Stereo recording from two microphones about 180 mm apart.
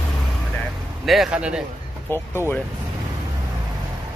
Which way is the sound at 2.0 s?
10° left (ahead or behind).